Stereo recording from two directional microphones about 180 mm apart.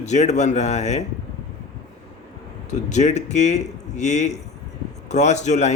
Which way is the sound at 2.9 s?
40° left (ahead or behind).